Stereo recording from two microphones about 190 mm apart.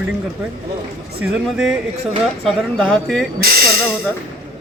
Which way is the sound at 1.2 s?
5° right (ahead or behind).